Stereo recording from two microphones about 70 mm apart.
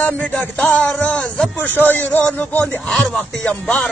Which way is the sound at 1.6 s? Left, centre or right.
Left.